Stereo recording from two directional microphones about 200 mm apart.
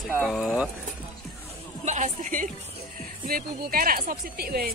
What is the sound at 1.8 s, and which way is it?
Music, 35° right (ahead or behind).